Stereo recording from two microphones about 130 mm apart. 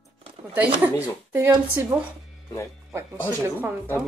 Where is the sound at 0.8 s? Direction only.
15° right (ahead or behind).